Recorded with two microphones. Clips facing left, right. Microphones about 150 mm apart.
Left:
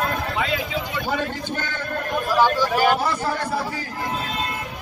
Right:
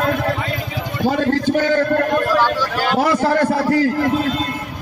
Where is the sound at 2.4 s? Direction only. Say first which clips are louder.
Even; 10° left (ahead or behind).